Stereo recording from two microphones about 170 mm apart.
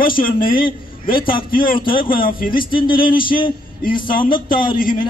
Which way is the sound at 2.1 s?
55° left (ahead or behind).